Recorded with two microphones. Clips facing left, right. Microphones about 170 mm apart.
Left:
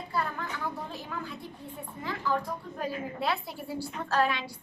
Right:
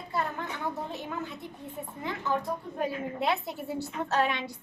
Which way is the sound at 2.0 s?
25° right (ahead or behind).